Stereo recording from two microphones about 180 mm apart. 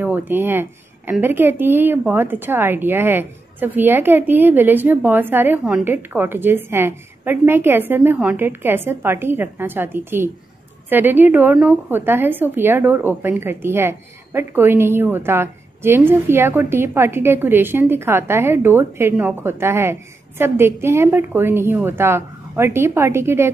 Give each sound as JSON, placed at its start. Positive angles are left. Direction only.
{"t": 0.0, "sound": "a woman's voice", "side_deg": -10}